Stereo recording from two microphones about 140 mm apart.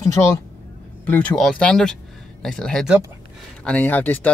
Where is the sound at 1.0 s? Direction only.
10° left (ahead or behind).